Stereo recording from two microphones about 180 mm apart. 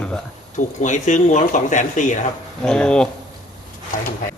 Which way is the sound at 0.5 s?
45° left (ahead or behind).